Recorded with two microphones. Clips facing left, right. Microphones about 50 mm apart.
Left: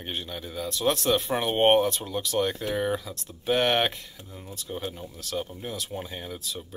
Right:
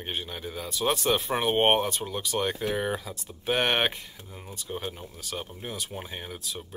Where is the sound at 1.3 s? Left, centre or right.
Centre.